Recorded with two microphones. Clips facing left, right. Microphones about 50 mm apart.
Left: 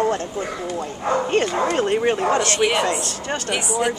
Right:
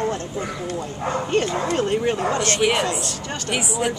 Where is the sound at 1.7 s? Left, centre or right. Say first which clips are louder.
Left 2 dB; left.